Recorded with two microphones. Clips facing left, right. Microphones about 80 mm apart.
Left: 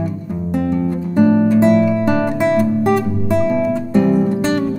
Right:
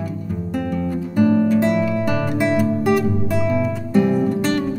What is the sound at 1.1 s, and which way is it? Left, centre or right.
Music, centre.